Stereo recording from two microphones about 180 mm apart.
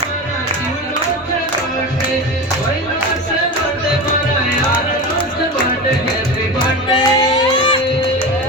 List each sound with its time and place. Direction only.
6.9 s music: 20° left (ahead or behind)